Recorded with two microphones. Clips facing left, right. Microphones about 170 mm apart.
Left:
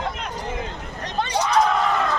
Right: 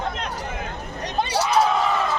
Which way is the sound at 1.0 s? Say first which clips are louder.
Even; 10° right (ahead or behind).